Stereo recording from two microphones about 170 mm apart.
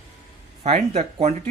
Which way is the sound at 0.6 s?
40° right (ahead or behind).